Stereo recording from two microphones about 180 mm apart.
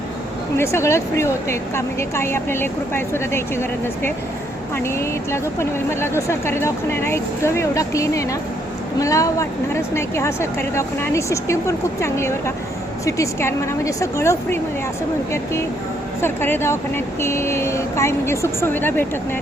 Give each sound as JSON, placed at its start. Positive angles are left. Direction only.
{"t": 0.5, "sound": "a woman's voice", "side_deg": 15}
{"t": 16.2, "sound": "a woman's voice", "side_deg": 10}